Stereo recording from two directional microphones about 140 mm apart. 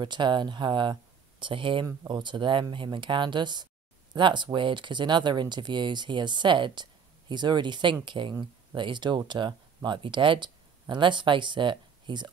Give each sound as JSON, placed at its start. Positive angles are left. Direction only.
{"t": 0.0, "sound": "speech", "side_deg": -35}